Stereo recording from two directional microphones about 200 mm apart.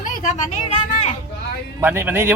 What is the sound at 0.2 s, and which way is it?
Speech, 40° left (ahead or behind).